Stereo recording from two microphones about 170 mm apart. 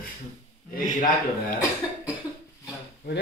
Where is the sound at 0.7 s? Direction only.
50° left (ahead or behind).